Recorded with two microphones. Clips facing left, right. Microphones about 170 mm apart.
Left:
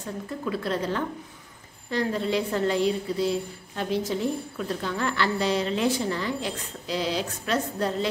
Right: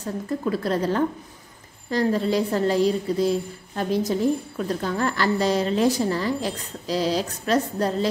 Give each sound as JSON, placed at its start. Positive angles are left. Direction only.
{"t": 0.0, "sound": "a woman's voice", "side_deg": -40}